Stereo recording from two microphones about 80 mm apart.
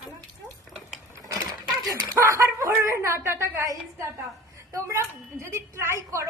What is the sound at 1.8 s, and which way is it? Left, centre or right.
Speech, right.